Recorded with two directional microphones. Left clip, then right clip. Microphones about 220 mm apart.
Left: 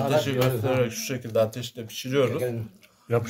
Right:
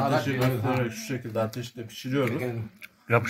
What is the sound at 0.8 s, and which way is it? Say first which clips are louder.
Speech: left 3 dB; 45° left (ahead or behind).